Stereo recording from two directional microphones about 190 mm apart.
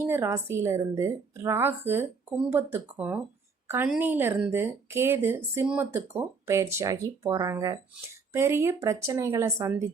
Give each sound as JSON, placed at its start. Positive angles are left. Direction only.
{"t": 0.0, "sound": "speech", "side_deg": -15}